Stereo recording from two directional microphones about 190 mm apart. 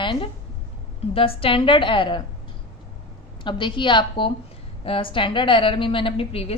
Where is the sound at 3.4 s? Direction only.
25° left (ahead or behind).